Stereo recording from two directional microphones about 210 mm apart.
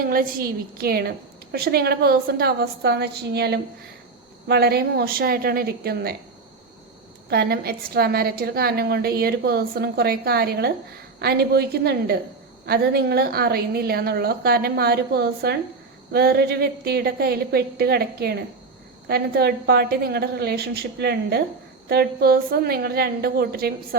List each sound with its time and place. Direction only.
0.0 s a woman's voice: 45° right (ahead or behind)
7.3 s a woman's voice: 50° right (ahead or behind)